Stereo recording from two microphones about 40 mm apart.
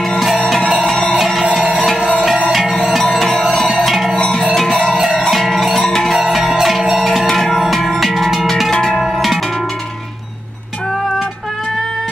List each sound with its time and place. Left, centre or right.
0.7 s music: centre
1.1 s music: centre
1.6 s music: right
2.1 s music: centre
3.7 s music: centre
4.7 s music: right
5.3 s music: centre